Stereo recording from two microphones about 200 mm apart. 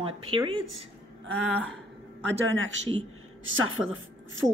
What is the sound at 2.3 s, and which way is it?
Speech, 75° right (ahead or behind).